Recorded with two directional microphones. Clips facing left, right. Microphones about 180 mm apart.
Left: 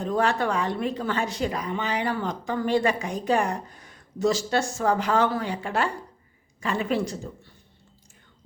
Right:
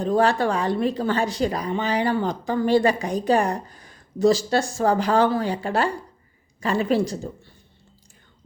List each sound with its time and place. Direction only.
0.0 s speech: 35° right (ahead or behind)